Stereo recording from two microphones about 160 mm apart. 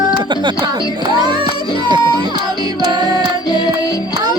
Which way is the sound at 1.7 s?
25° right (ahead or behind).